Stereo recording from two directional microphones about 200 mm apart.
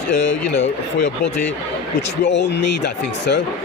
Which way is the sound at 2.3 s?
60° left (ahead or behind).